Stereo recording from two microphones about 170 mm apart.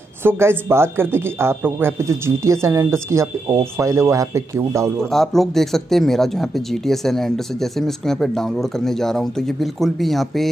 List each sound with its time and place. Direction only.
0.2 s a man's voice: 15° right (ahead or behind)
5.1 s speech: centre (ahead or behind)